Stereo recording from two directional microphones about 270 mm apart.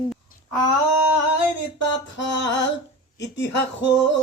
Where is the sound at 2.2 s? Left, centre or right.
Left.